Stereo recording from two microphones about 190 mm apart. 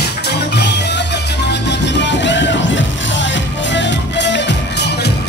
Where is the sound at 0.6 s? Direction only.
65° left (ahead or behind).